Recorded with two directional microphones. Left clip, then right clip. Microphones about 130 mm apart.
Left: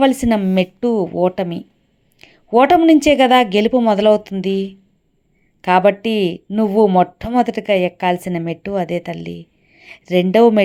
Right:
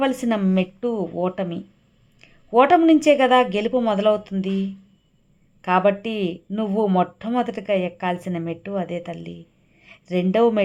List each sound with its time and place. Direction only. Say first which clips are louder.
0.0 s a woman's voice: left 7 dB; 30° left (ahead or behind)
0.5 s a woman's voice: left 7 dB; 40° left (ahead or behind)